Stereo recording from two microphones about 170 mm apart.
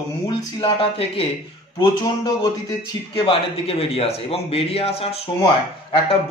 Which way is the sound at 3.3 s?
35° left (ahead or behind).